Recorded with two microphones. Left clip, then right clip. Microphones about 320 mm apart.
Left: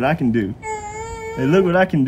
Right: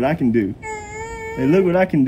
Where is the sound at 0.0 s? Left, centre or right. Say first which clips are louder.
Even; left.